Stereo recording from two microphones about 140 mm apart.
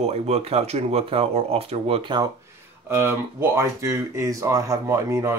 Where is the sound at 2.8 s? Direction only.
15° right (ahead or behind).